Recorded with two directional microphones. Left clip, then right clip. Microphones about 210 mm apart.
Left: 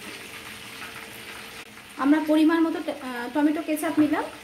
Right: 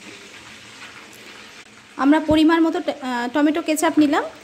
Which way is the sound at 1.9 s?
40° right (ahead or behind).